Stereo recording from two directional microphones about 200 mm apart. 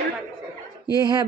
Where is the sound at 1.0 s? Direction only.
20° right (ahead or behind).